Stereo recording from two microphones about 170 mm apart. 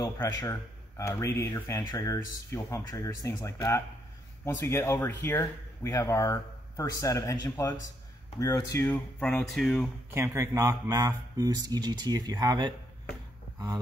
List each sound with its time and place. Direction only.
0.4 s speech: 20° left (ahead or behind)
9.2 s speech: centre (ahead or behind)
10.1 s speech: 15° right (ahead or behind)